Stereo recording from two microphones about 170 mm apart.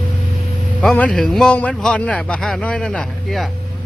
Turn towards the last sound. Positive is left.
turn(degrees=0)  # may be behind; listen again after turning